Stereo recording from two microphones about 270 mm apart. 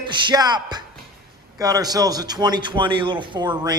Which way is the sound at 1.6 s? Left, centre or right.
Centre.